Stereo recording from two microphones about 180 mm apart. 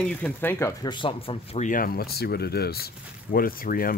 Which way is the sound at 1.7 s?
55° left (ahead or behind).